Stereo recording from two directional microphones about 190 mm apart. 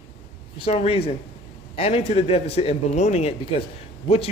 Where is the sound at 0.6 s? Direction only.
35° left (ahead or behind).